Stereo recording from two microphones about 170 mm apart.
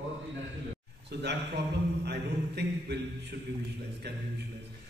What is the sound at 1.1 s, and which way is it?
A man's voice, 70° right (ahead or behind).